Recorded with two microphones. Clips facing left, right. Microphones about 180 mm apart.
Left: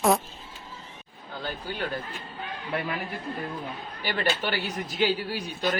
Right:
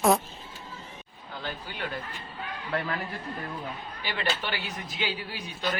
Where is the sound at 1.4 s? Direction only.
40° left (ahead or behind).